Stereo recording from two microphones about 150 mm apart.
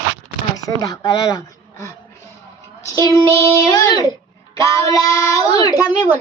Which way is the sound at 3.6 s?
25° left (ahead or behind).